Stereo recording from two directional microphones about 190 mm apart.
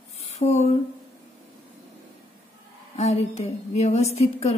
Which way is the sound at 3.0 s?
35° left (ahead or behind).